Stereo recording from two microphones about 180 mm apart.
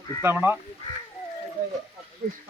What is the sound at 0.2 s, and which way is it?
Speech, 10° right (ahead or behind).